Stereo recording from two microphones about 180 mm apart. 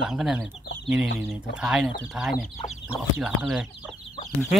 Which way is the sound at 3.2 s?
5° right (ahead or behind).